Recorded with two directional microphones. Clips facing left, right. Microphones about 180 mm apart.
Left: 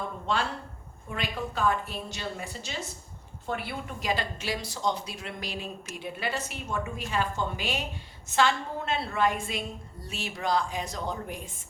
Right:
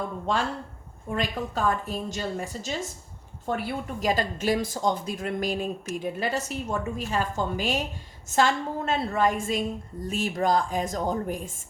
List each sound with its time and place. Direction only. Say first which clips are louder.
1.1 s speech: right 4 dB; 40° right (ahead or behind)